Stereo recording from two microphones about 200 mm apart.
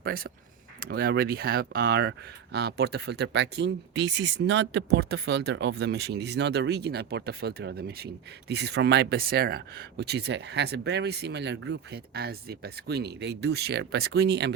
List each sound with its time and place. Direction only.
0.8 s speech: 50° right (ahead or behind)